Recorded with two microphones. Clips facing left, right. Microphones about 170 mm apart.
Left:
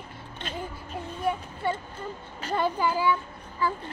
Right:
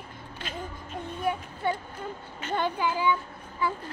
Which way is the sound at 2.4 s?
35° left (ahead or behind).